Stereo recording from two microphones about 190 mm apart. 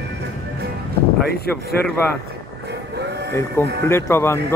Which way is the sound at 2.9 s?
60° right (ahead or behind).